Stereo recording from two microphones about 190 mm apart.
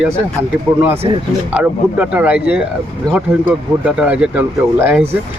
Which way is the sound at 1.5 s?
5° right (ahead or behind).